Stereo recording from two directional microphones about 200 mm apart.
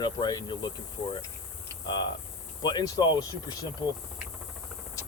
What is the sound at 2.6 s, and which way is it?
Speech, 20° left (ahead or behind).